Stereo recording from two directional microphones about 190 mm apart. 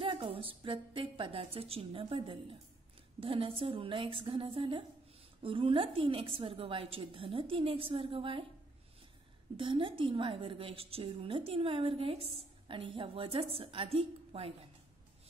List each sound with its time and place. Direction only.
0.0 s a woman's voice: 30° right (ahead or behind)
9.6 s a woman's voice: 25° right (ahead or behind)